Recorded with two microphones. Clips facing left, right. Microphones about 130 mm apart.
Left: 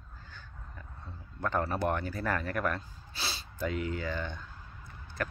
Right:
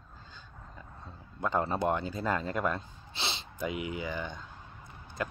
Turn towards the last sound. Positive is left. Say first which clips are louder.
# even
turn(degrees=-15)  # may be behind; listen again after turning